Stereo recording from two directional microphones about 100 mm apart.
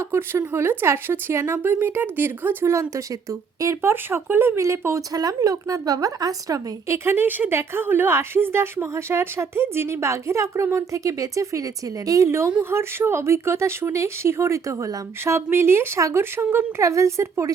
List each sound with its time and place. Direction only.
0.0 s speech: 25° right (ahead or behind)